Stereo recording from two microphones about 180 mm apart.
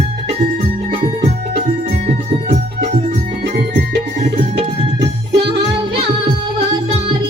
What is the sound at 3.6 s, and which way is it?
Music, 65° right (ahead or behind).